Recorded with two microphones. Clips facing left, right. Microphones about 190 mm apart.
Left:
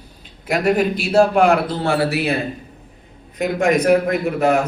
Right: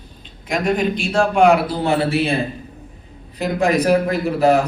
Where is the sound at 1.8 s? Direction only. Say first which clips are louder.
Right 1 dB; 20° right (ahead or behind).